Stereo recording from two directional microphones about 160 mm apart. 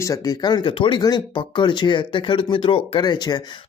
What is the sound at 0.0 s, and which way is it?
Speech, 20° left (ahead or behind).